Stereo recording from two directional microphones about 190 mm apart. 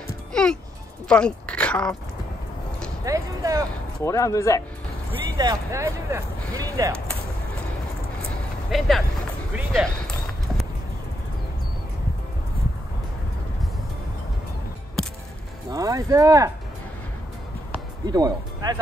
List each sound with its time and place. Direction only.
0.3 s music: 5° left (ahead or behind)
1.0 s speech: 5° left (ahead or behind)
3.1 s speech: 15° right (ahead or behind)
4.0 s speech: 15° left (ahead or behind)
5.4 s speech: 15° right (ahead or behind)
8.6 s speech: centre (ahead or behind)
15.7 s speech: 15° right (ahead or behind)
18.0 s speech: 20° right (ahead or behind)